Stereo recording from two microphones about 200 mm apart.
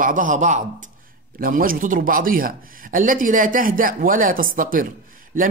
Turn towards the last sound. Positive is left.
turn(degrees=-40)  # may be behind; listen again after turning